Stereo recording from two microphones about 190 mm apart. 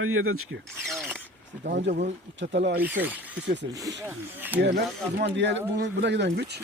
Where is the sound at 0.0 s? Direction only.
90° right.